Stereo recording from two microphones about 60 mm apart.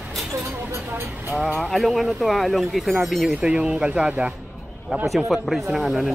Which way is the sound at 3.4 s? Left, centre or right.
Centre.